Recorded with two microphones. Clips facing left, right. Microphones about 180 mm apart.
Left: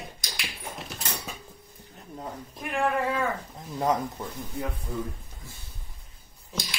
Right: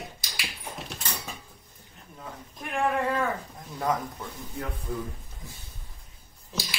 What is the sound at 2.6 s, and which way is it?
Speech, centre (ahead or behind).